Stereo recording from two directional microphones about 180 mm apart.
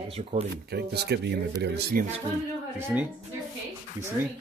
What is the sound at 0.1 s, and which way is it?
Speech, 35° right (ahead or behind).